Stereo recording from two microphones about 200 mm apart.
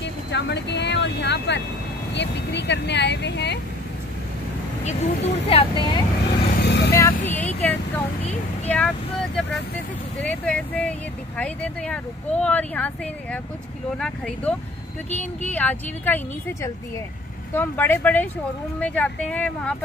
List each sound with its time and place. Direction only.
0.0 s speech: 60° left (ahead or behind)
4.8 s speech: 30° left (ahead or behind)
6.6 s vehicle: 60° left (ahead or behind)
6.9 s speech: 10° left (ahead or behind)
17.6 s speech: 10° left (ahead or behind)